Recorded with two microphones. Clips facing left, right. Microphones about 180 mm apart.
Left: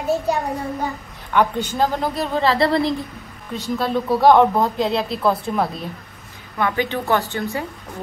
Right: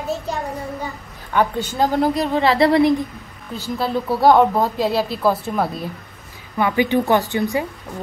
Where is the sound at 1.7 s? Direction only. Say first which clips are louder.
Right 4 dB; 15° right (ahead or behind).